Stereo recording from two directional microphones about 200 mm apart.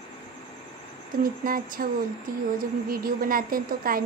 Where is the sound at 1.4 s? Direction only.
45° right (ahead or behind).